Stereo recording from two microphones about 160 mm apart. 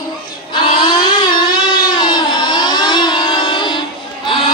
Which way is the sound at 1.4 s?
65° left (ahead or behind).